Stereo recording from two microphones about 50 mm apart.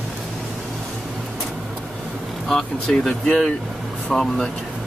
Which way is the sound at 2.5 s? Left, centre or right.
Centre.